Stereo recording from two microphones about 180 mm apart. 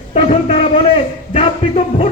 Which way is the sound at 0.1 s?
35° left (ahead or behind).